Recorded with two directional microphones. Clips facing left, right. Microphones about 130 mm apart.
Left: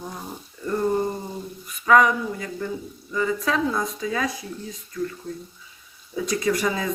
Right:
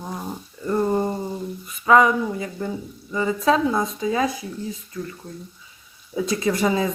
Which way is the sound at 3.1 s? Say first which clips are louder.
Right 4 dB; 25° right (ahead or behind).